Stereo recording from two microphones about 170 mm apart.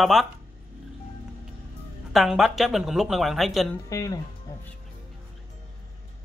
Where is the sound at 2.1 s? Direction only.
Centre (ahead or behind).